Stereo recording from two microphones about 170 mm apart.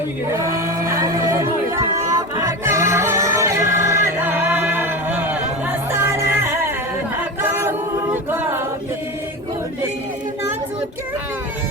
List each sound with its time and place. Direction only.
0.9 s music: 20° right (ahead or behind)
7.4 s a capella: 15° right (ahead or behind)